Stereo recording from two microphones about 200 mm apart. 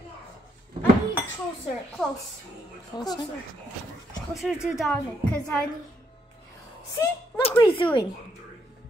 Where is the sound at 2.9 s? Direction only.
20° left (ahead or behind).